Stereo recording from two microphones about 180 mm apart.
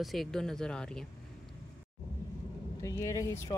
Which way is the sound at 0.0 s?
Centre (ahead or behind).